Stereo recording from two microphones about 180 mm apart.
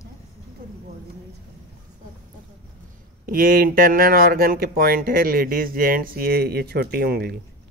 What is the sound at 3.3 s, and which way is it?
Speech, 55° right (ahead or behind).